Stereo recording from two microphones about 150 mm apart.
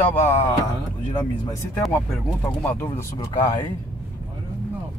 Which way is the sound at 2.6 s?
15° left (ahead or behind).